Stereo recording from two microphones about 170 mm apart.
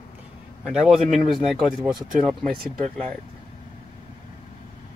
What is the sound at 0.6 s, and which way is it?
Speech, 5° right (ahead or behind).